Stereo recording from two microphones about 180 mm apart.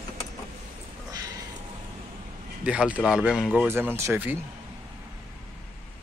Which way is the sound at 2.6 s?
5° right (ahead or behind).